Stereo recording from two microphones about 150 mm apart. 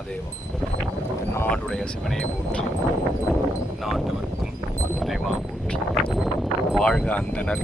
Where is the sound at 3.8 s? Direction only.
Centre (ahead or behind).